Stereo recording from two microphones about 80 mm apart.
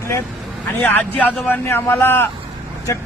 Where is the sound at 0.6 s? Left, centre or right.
Centre.